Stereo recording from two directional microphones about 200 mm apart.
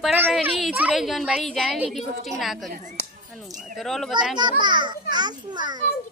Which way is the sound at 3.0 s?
45° left (ahead or behind).